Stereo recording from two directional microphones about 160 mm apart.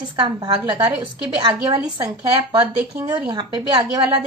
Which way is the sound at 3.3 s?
25° right (ahead or behind).